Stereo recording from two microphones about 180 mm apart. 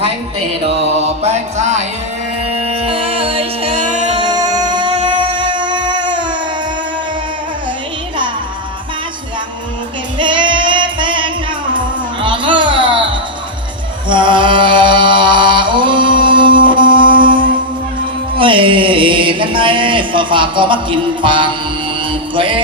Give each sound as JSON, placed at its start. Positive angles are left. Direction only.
{"t": 0.9, "sound": "music", "side_deg": -35}
{"t": 4.2, "sound": "music", "side_deg": -20}
{"t": 10.2, "sound": "child singing", "side_deg": -25}
{"t": 12.2, "sound": "music", "side_deg": -25}
{"t": 14.1, "sound": "mantra", "side_deg": -25}
{"t": 18.3, "sound": "a sound", "side_deg": -30}
{"t": 22.4, "sound": "music", "side_deg": -30}